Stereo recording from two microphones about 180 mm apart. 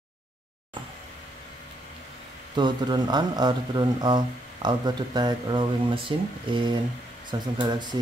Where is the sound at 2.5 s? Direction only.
25° right (ahead or behind).